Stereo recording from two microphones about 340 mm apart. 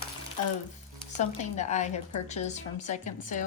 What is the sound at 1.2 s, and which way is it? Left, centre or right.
A woman's voice, centre.